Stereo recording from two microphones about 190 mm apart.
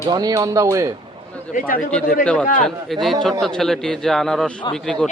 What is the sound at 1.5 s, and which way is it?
Speech, 45° left (ahead or behind).